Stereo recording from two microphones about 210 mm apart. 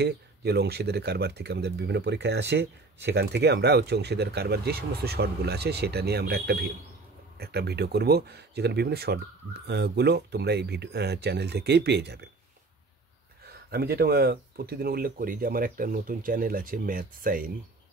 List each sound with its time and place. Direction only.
0.0 s speech: 50° right (ahead or behind)
13.5 s speech: 50° right (ahead or behind)